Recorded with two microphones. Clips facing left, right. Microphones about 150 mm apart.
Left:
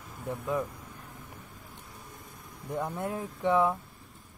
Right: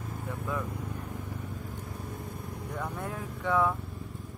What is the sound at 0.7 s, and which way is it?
Vehicle, 65° right (ahead or behind).